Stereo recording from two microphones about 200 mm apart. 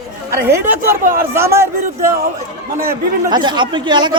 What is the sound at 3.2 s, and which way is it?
Speech, 20° right (ahead or behind).